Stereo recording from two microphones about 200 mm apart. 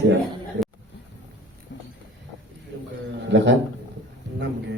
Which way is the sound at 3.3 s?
65° right (ahead or behind).